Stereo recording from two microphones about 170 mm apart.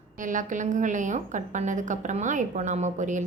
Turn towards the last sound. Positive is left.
turn(degrees=-45)  # may be behind; listen again after turning